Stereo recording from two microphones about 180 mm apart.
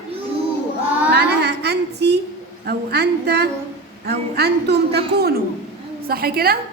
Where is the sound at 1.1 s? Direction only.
70° right (ahead or behind).